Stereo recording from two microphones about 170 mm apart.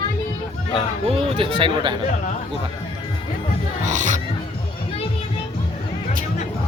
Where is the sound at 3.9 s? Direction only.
45° right (ahead or behind).